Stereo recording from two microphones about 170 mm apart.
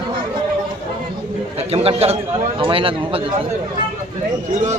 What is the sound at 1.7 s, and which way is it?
Speech, 35° right (ahead or behind).